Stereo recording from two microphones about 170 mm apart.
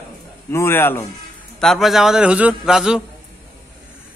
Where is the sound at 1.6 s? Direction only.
Centre (ahead or behind).